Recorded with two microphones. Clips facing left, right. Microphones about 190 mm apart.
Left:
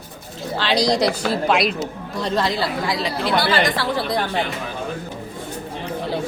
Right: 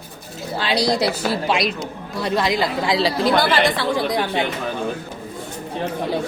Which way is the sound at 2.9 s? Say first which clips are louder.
Right 5 dB; 35° right (ahead or behind).